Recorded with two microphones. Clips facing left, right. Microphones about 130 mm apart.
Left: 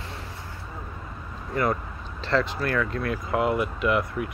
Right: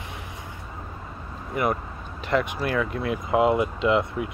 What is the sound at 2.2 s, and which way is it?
Speech, 15° right (ahead or behind).